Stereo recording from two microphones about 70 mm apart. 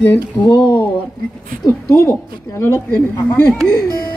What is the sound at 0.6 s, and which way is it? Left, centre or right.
Speech, left.